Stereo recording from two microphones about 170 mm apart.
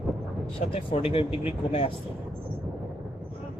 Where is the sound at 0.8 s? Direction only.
35° left (ahead or behind).